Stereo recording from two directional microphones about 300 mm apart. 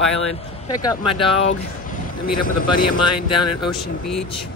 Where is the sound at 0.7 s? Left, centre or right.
Centre.